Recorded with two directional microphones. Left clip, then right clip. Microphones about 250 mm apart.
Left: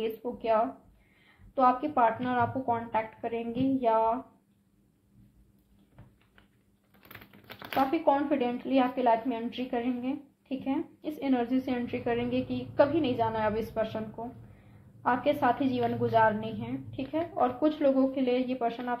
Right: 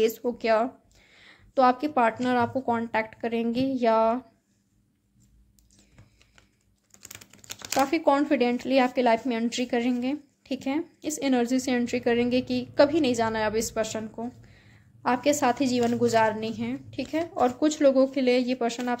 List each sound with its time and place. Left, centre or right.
0.0 s speech: right
7.1 s speech: right